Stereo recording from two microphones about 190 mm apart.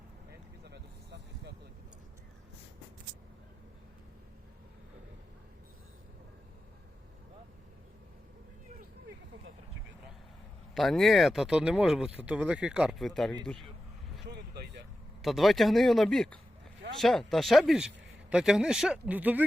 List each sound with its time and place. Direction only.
0.6 s vehicle: 60° right (ahead or behind)
10.8 s speech: centre (ahead or behind)
14.3 s vehicle: 60° right (ahead or behind)
15.2 s speech: centre (ahead or behind)